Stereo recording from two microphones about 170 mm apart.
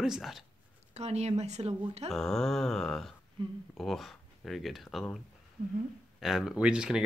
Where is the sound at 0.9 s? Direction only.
40° right (ahead or behind).